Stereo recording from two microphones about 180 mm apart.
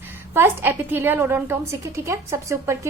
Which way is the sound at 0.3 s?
10° right (ahead or behind).